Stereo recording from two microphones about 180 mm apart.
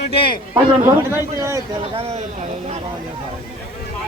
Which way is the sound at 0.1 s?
30° left (ahead or behind).